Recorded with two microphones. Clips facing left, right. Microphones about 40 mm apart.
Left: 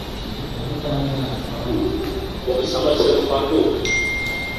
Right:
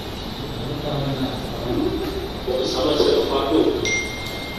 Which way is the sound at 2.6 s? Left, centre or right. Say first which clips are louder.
Left 1 dB; left.